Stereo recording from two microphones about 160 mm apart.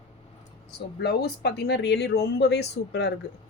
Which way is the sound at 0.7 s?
85° left.